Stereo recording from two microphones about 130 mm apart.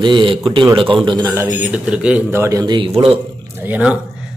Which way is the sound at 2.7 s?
45° right (ahead or behind).